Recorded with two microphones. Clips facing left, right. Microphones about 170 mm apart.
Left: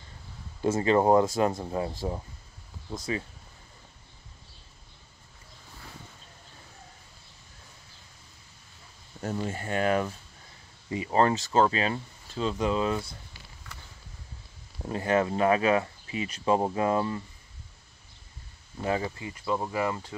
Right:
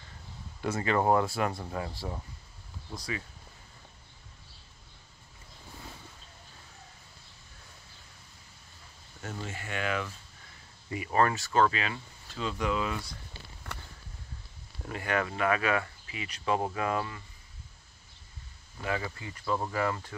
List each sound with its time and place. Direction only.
0.6 s speech: 25° left (ahead or behind)
9.2 s speech: 40° left (ahead or behind)
10.9 s speech: 25° left (ahead or behind)
14.8 s speech: 30° left (ahead or behind)
18.8 s speech: 25° left (ahead or behind)
19.4 s speech: 10° left (ahead or behind)